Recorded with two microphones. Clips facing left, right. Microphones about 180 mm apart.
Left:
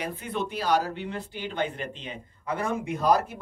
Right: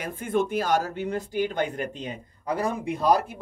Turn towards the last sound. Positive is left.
turn(degrees=-30)  # may be behind; listen again after turning